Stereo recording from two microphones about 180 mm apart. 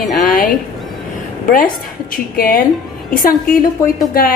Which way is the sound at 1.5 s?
50° left (ahead or behind).